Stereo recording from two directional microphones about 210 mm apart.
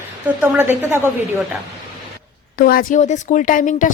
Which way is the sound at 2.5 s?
45° left (ahead or behind).